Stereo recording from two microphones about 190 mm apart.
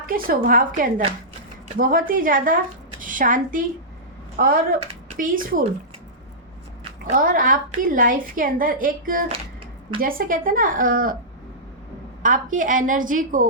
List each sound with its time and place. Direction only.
0.0 s a woman's voice: 50° right (ahead or behind)
4.8 s a sound: 35° right (ahead or behind)
5.2 s a woman's voice: 45° right (ahead or behind)
7.1 s a woman's voice: 45° right (ahead or behind)
12.2 s a woman's voice: 45° right (ahead or behind)